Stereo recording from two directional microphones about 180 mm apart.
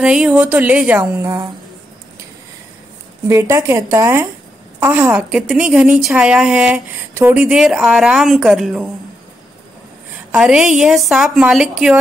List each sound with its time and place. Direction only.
0.0 s speech: 5° right (ahead or behind)
3.3 s a woman's voice: 15° right (ahead or behind)
10.3 s a woman's voice: 5° right (ahead or behind)